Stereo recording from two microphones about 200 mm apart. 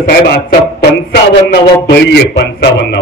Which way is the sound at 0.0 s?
50° left (ahead or behind).